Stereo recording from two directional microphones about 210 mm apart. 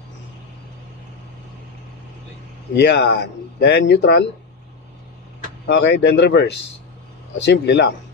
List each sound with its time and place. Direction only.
2.7 s speech: 55° left (ahead or behind)
5.7 s speech: 55° left (ahead or behind)